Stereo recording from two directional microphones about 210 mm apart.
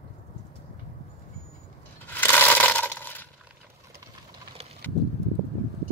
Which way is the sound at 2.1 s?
10° left (ahead or behind).